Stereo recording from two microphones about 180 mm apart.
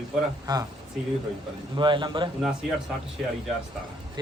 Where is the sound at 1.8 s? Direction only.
25° right (ahead or behind).